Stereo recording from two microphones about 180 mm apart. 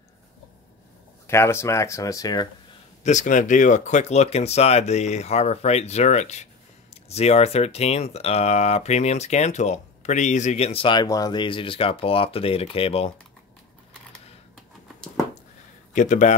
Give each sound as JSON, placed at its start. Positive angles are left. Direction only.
{"t": 1.2, "sound": "speech", "side_deg": 15}
{"t": 3.0, "sound": "speech", "side_deg": 40}
{"t": 15.9, "sound": "a man's voice", "side_deg": 45}